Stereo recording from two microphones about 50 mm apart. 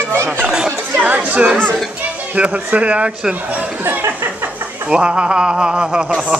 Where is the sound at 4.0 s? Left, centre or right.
Right.